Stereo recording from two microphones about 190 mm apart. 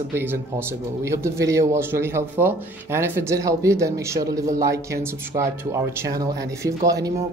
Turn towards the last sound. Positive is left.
turn(degrees=-20)  # may be behind; listen again after turning